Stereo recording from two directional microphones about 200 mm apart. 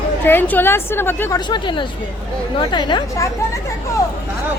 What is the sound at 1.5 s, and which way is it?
Speech, 25° left (ahead or behind).